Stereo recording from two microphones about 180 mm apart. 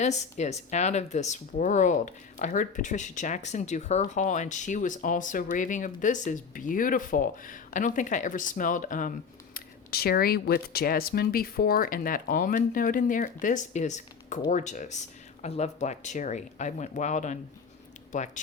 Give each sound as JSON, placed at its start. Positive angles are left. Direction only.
{"t": 0.0, "sound": "speech", "side_deg": 40}
{"t": 9.6, "sound": "speech", "side_deg": 60}